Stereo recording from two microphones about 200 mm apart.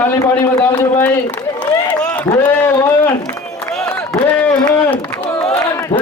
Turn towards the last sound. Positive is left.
turn(degrees=15)  # may be behind; listen again after turning